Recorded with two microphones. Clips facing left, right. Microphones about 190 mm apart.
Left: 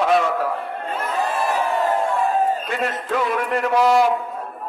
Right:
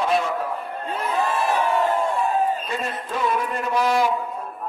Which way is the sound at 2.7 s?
75° left (ahead or behind).